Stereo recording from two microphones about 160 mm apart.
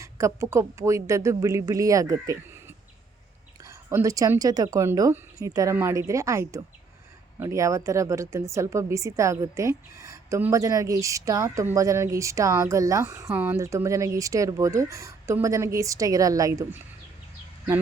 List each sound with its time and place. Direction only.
0.0 s a woman's voice: 20° right (ahead or behind)